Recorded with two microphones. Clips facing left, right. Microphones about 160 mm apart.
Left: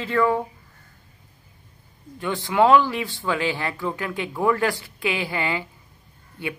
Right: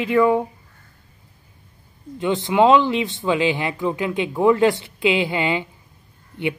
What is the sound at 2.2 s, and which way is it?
Speech, 20° right (ahead or behind).